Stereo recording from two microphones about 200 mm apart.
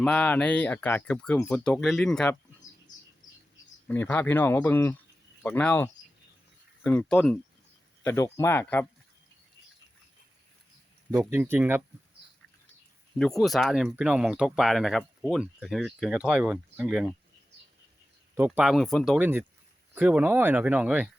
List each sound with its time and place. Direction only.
0.0 s speech: 5° left (ahead or behind)
3.8 s speech: 10° left (ahead or behind)
8.0 s speech: 15° left (ahead or behind)
11.1 s speech: 10° right (ahead or behind)
13.1 s speech: centre (ahead or behind)
18.3 s speech: 10° right (ahead or behind)